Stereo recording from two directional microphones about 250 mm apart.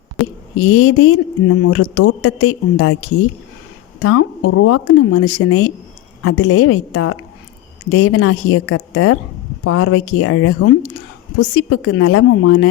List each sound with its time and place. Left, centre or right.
0.6 s speech: left
4.0 s speech: left